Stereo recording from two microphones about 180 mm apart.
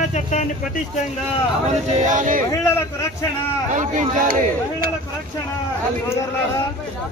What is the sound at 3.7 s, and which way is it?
Speech, 45° right (ahead or behind).